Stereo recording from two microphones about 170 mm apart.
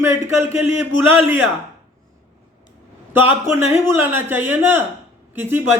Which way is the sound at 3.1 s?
10° right (ahead or behind).